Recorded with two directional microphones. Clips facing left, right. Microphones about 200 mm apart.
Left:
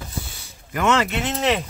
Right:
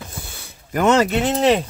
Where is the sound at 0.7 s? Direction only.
40° right (ahead or behind).